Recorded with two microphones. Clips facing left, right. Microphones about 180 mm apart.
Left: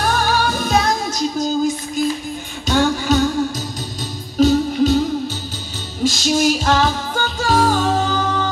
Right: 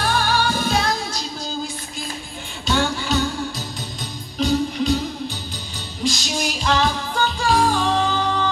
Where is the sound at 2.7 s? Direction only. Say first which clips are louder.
Left 5 dB; 45° left (ahead or behind).